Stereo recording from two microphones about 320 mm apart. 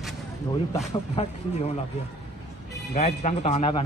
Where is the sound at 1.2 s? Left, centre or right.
Centre.